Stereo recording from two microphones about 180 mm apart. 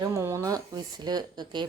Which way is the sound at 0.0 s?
15° right (ahead or behind).